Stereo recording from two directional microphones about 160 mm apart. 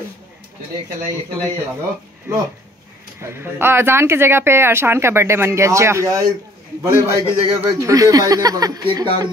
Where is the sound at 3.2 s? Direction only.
15° right (ahead or behind).